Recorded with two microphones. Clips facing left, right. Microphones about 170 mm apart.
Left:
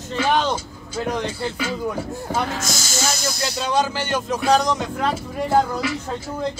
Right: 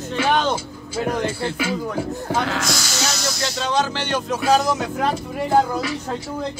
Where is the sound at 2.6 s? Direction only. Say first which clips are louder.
Right 1 dB; 45° left (ahead or behind).